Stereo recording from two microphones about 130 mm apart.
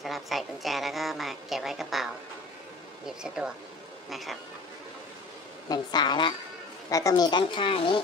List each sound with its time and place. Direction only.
0.0 s a woman's voice: centre (ahead or behind)
3.1 s a woman's voice: 5° right (ahead or behind)
5.7 s speech: 35° left (ahead or behind)